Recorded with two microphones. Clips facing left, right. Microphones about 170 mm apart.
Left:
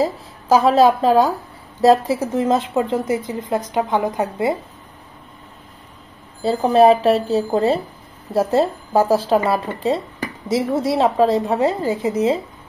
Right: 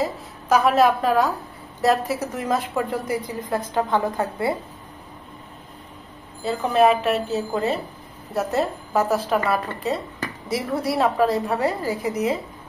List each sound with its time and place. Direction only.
0.0 s a woman's voice: 30° left (ahead or behind)
6.4 s a woman's voice: 35° left (ahead or behind)